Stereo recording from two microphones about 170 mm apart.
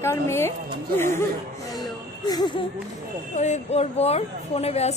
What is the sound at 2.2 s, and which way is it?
Speech, 25° left (ahead or behind).